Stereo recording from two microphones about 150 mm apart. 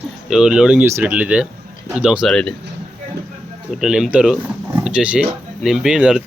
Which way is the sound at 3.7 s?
5° right (ahead or behind).